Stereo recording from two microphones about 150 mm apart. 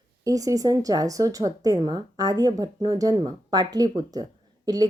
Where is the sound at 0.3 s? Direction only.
25° right (ahead or behind).